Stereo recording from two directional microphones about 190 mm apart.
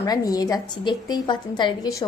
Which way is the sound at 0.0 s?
20° left (ahead or behind).